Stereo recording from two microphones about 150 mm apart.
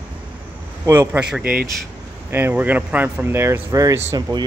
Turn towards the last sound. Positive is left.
turn(degrees=-20)  # may be behind; listen again after turning